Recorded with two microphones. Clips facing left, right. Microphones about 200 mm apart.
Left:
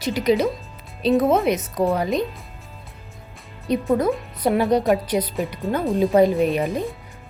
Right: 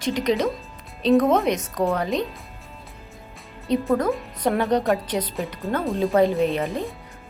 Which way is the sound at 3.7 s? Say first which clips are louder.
Left 1 dB; 10° left (ahead or behind).